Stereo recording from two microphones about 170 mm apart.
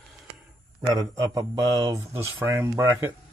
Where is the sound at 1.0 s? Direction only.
20° right (ahead or behind).